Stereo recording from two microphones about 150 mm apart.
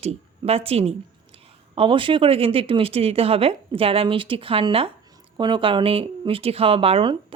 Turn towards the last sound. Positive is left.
turn(degrees=-35)  # may be behind; listen again after turning